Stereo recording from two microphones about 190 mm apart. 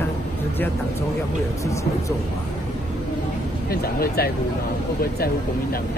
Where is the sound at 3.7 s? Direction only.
55° left (ahead or behind).